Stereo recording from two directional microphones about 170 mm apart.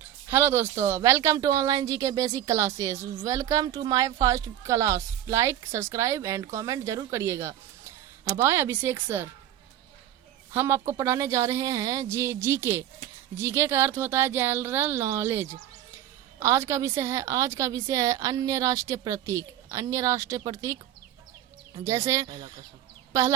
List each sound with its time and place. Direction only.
0.3 s speech: 15° right (ahead or behind)
10.5 s speech: 15° right (ahead or behind)
21.8 s speech: 15° right (ahead or behind)
22.3 s speech: 30° right (ahead or behind)